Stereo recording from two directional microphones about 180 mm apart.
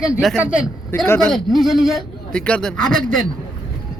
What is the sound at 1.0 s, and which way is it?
Speech, 15° left (ahead or behind).